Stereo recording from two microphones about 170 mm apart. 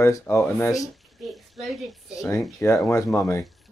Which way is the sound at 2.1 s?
20° left (ahead or behind).